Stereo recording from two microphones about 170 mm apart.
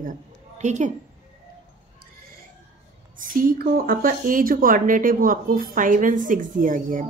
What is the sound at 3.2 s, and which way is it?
A woman's voice, 55° right (ahead or behind).